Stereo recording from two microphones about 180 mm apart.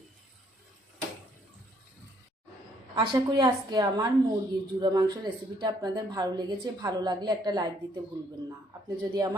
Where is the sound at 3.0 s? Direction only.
20° right (ahead or behind).